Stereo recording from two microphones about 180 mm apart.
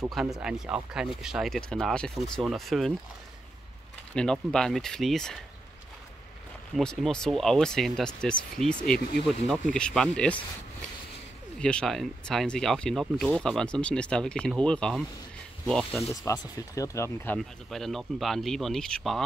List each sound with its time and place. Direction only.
0.1 s speech: centre (ahead or behind)
4.1 s speech: 5° left (ahead or behind)
6.7 s speech: centre (ahead or behind)
8.6 s speech: 35° right (ahead or behind)
9.5 s speech: 5° left (ahead or behind)
11.6 s speech: 5° left (ahead or behind)
16.1 s speech: 20° left (ahead or behind); by 19.2 s 5° left (ahead or behind)